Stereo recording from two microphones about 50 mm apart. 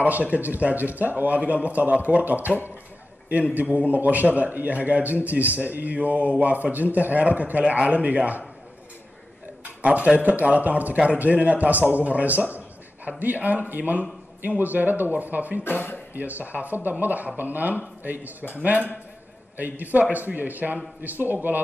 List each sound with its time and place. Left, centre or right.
0.0 s speech: right
9.8 s speech: right
15.6 s speech: left
16.2 s speech: right